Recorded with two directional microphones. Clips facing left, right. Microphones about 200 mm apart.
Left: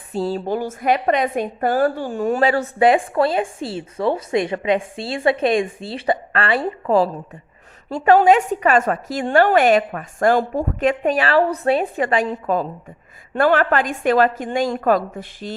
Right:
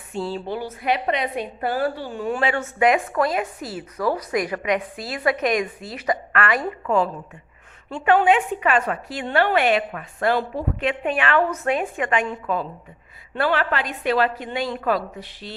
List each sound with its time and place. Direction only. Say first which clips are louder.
0.1 s a woman's voice: left 5 dB; 40° left (ahead or behind)
13.3 s a woman's voice: left 6 dB; 50° left (ahead or behind)